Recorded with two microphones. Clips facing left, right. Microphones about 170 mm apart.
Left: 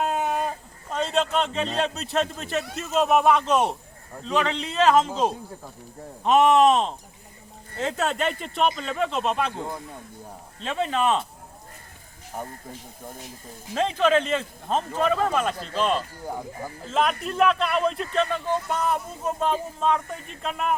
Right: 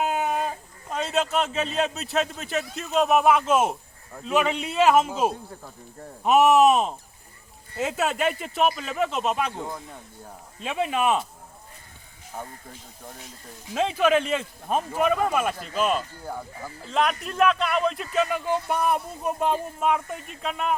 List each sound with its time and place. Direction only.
0.0 s a sound: 5° right (ahead or behind)
2.7 s speech: centre (ahead or behind)
10.6 s speech: 10° right (ahead or behind)
12.3 s speech: 15° left (ahead or behind)
13.7 s speech: 10° right (ahead or behind)
16.2 s speech: 15° left (ahead or behind)
16.9 s speech: centre (ahead or behind)